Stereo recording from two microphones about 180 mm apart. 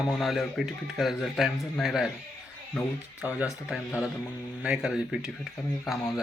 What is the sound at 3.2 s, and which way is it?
Speech, 10° right (ahead or behind).